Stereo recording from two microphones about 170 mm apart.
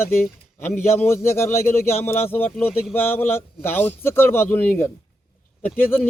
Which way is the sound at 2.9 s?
10° left (ahead or behind).